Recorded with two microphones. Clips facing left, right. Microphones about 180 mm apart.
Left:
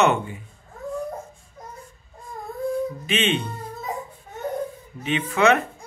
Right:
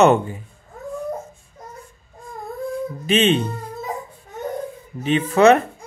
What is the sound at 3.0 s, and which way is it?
Speech, 35° right (ahead or behind).